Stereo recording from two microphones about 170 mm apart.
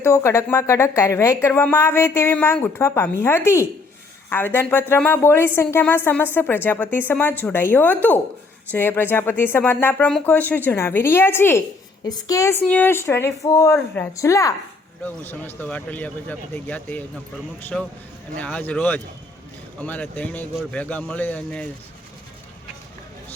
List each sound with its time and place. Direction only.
0.0 s speech: 15° left (ahead or behind)